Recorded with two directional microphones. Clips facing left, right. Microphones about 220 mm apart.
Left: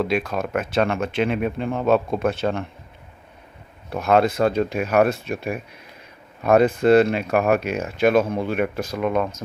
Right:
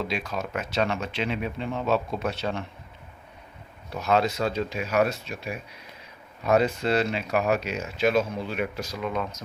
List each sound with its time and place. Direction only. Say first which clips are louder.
0.0 s speech: left 7 dB; 55° left (ahead or behind)
3.8 s speech: left 6 dB; 55° left (ahead or behind)